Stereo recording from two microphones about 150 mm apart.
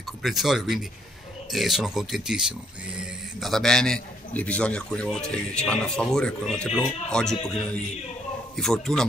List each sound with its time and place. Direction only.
0.0 s a man's voice: centre (ahead or behind)